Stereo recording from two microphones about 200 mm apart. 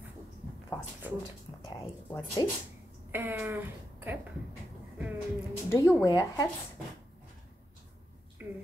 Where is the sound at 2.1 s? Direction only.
20° left (ahead or behind).